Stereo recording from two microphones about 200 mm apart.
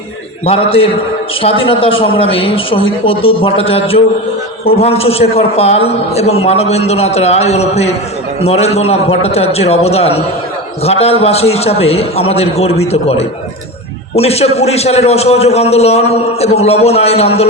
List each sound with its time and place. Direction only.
0.4 s a woman's voice: 30° left (ahead or behind)